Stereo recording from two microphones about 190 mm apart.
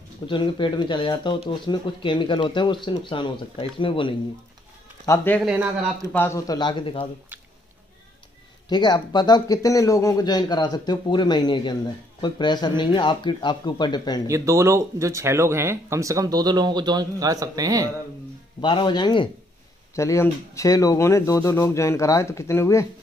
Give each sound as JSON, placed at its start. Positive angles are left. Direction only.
{"t": 0.3, "sound": "speech", "side_deg": 25}
{"t": 5.0, "sound": "speech", "side_deg": 15}
{"t": 5.4, "sound": "speech", "side_deg": -5}
{"t": 6.1, "sound": "speech", "side_deg": 15}
{"t": 8.6, "sound": "speech", "side_deg": 20}
{"t": 14.2, "sound": "speech", "side_deg": -15}
{"t": 18.6, "sound": "speech", "side_deg": 25}